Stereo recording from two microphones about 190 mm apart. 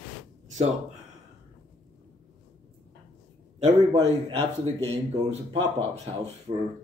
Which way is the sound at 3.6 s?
35° right (ahead or behind).